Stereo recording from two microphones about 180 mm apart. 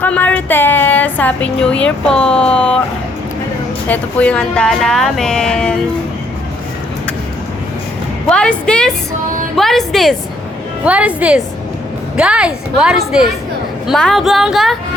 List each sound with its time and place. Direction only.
0.0 s a woman's voice: 10° left (ahead or behind)
3.8 s speech: 10° left (ahead or behind)
8.3 s a woman's voice: 5° left (ahead or behind)